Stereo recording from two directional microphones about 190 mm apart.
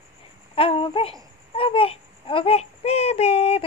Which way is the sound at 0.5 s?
30° left (ahead or behind).